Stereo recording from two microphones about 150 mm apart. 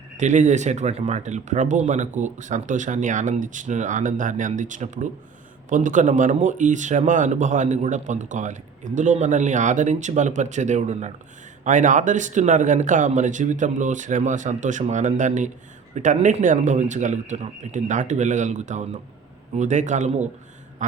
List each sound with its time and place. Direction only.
0.2 s speech: 55° right (ahead or behind)